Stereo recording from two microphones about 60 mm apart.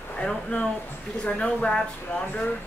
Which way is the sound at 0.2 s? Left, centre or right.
Centre.